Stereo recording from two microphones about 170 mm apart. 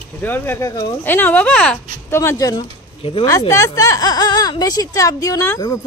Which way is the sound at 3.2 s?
20° left (ahead or behind).